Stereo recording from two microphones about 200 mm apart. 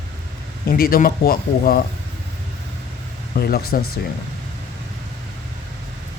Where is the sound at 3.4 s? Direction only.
50° left (ahead or behind).